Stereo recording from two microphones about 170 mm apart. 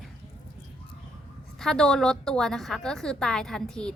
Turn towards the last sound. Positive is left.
turn(degrees=5)  # may be behind; listen again after turning